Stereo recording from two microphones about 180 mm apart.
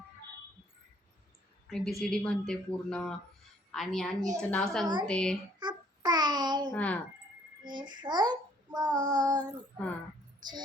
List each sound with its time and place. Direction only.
1.6 s a woman's voice: centre (ahead or behind)
5.5 s babbling: 25° right (ahead or behind)
6.7 s speech: 10° left (ahead or behind)
7.6 s child singing: 25° right (ahead or behind)